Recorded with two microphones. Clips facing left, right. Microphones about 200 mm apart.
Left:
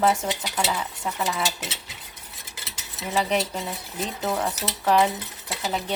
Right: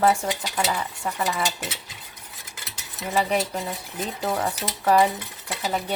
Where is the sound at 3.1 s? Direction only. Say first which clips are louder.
Right 1 dB; 5° right (ahead or behind).